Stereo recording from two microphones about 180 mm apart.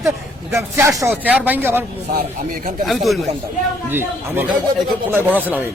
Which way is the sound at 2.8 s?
Centre (ahead or behind).